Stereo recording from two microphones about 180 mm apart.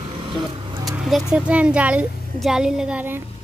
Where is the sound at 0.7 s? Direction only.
15° right (ahead or behind).